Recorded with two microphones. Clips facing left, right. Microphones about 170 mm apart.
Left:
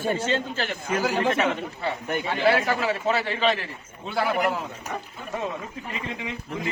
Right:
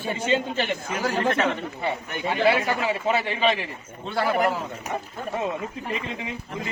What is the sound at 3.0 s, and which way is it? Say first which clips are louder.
Speech: right 1 dB; 10° right (ahead or behind).